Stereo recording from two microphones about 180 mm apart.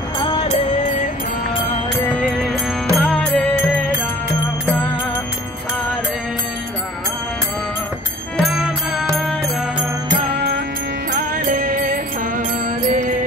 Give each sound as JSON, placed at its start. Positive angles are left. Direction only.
{"t": 2.2, "sound": "music", "side_deg": 0}
{"t": 8.4, "sound": "music", "side_deg": 0}
{"t": 11.1, "sound": "music", "side_deg": -55}